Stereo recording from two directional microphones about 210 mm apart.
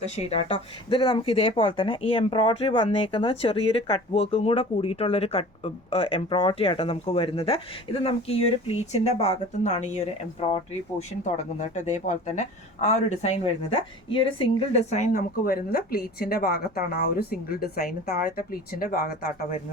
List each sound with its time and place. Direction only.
0.0 s a woman's voice: 30° left (ahead or behind)